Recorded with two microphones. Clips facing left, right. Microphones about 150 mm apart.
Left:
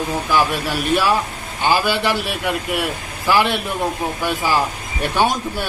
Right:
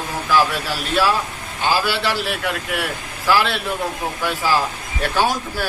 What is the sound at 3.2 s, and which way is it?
Speech, 15° left (ahead or behind).